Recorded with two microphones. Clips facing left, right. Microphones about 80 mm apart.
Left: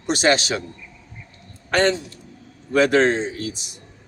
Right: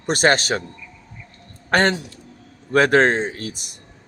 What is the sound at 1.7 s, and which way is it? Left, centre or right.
Speech, right.